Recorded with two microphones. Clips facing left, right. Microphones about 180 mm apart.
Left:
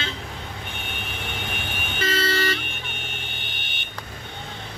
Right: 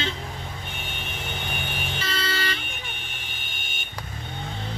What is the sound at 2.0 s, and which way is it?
Vehicle, 50° left (ahead or behind).